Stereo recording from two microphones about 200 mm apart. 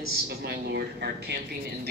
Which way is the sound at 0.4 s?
55° right (ahead or behind).